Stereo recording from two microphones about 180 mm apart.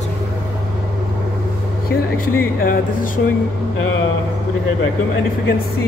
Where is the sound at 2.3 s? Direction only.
55° left (ahead or behind).